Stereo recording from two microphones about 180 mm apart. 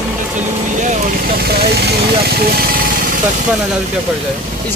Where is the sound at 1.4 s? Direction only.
60° right (ahead or behind).